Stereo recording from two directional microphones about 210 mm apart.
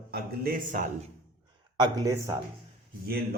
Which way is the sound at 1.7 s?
20° right (ahead or behind).